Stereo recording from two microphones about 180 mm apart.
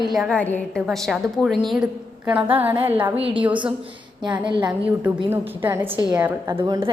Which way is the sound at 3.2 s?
30° right (ahead or behind).